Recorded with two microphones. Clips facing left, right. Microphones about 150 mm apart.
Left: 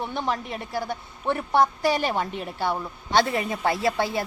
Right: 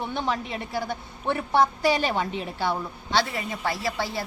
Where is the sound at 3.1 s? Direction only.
55° left (ahead or behind).